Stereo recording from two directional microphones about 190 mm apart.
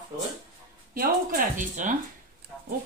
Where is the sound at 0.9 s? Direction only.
45° right (ahead or behind).